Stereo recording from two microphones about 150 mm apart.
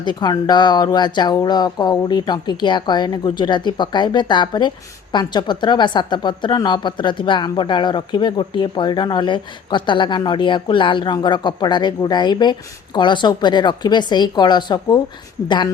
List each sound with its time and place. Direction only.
0.0 s speech: 30° left (ahead or behind)